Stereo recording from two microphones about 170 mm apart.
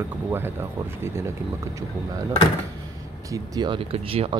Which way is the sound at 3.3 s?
25° right (ahead or behind).